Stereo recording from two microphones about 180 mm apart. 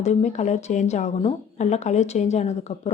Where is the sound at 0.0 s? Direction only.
40° left (ahead or behind).